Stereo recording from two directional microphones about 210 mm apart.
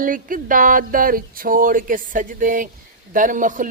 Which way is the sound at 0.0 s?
40° right (ahead or behind).